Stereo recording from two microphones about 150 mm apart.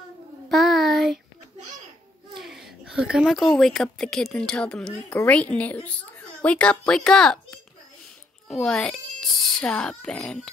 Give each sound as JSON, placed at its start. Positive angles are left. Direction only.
{"t": 0.5, "sound": "child singing", "side_deg": 0}
{"t": 2.3, "sound": "speech", "side_deg": 0}